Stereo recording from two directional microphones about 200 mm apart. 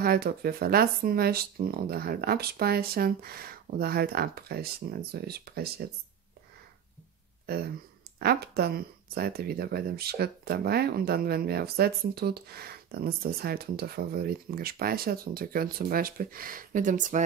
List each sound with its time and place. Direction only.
0.0 s speech: 50° right (ahead or behind)
7.4 s speech: 50° right (ahead or behind)